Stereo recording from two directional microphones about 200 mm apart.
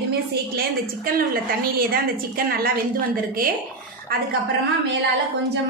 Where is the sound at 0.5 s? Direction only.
45° right (ahead or behind).